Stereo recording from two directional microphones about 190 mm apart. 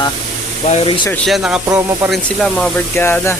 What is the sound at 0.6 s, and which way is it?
Speech, 30° left (ahead or behind).